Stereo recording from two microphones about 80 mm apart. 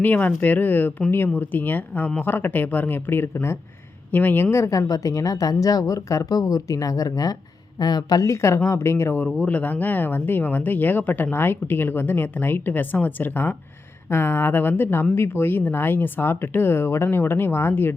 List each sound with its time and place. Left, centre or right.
0.0 s speech: left
4.5 s speech: left
4.9 s speech: left
7.8 s speech: left
8.2 s speech: left
9.2 s speech: centre